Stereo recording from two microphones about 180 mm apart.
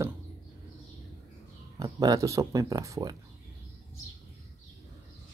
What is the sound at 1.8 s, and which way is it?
Speech, 20° right (ahead or behind).